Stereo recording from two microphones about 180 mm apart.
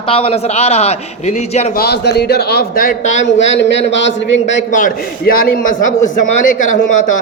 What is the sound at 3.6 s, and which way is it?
Speech, 80° left.